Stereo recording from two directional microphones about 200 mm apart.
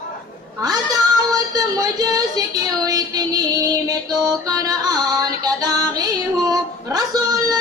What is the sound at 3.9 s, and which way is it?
Music, 20° right (ahead or behind).